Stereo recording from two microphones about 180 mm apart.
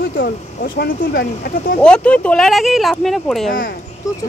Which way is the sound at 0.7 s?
60° left (ahead or behind).